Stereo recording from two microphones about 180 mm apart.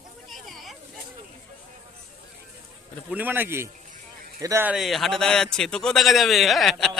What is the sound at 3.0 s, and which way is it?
A man's voice, 10° right (ahead or behind).